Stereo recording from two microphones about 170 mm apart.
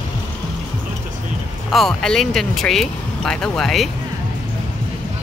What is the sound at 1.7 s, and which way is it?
Speech, 5° left (ahead or behind).